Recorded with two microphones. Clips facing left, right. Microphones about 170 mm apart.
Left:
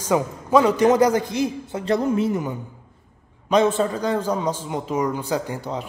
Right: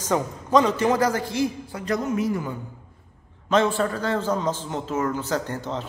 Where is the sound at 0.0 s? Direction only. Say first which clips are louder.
Left 3 dB; 10° left (ahead or behind).